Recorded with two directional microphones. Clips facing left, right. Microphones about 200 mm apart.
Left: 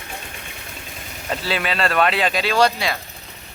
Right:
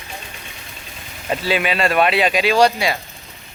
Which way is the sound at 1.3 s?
15° right (ahead or behind).